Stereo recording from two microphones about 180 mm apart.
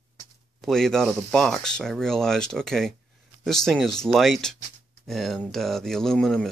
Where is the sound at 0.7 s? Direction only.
5° left (ahead or behind).